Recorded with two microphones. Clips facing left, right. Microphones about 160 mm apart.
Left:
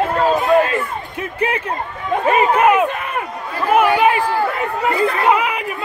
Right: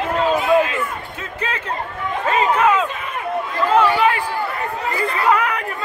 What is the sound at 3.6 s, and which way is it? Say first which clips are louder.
Speech: left 2 dB; 15° left (ahead or behind).